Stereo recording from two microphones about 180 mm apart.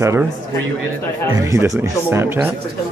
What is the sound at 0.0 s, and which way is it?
Speech, 15° right (ahead or behind).